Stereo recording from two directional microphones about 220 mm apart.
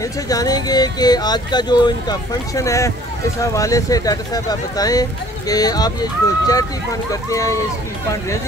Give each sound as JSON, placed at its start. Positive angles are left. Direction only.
{"t": 0.3, "sound": "speech", "side_deg": 15}